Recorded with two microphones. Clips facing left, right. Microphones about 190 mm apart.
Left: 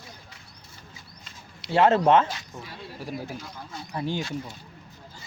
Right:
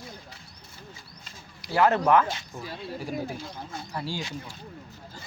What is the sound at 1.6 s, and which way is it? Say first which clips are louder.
Speech: left 3 dB; 25° left (ahead or behind).